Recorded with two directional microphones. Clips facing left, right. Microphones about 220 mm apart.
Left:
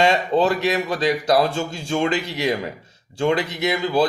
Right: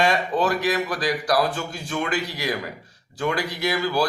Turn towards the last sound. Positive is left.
turn(degrees=25)  # may be behind; listen again after turning